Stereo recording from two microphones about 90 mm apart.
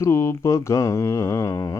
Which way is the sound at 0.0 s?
30° left (ahead or behind).